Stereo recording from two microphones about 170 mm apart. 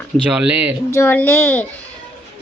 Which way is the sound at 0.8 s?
15° left (ahead or behind).